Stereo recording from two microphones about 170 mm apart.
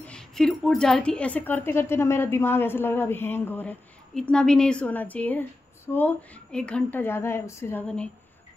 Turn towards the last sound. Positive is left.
turn(degrees=15)  # may be behind; listen again after turning